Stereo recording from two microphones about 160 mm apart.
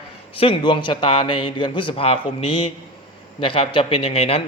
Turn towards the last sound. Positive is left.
turn(degrees=35)  # may be behind; listen again after turning